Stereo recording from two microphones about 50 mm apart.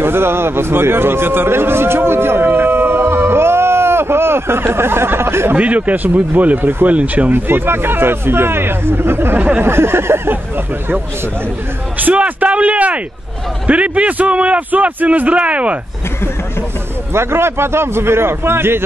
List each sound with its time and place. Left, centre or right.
0.0 s a man's voice: right
5.5 s speech: right
7.0 s a man's voice: right
7.3 s speech: right
12.0 s a man's voice: right
17.1 s a man's voice: right